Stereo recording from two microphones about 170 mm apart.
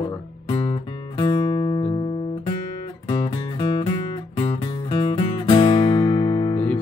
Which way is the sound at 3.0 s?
25° left (ahead or behind).